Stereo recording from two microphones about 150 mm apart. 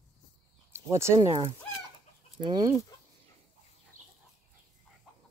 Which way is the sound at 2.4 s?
30° right (ahead or behind).